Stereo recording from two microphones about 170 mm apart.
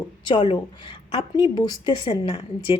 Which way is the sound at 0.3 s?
30° left (ahead or behind).